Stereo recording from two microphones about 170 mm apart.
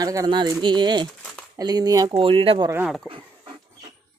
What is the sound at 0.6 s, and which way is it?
Speech, 25° right (ahead or behind).